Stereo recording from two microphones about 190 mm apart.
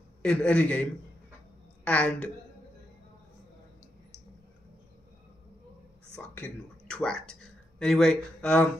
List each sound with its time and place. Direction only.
0.2 s a man's voice: 5° left (ahead or behind)
1.9 s a man's voice: 5° left (ahead or behind)
6.1 s speech: 5° left (ahead or behind)